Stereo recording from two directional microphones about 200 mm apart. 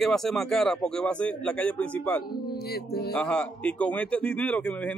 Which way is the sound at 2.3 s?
50° left (ahead or behind).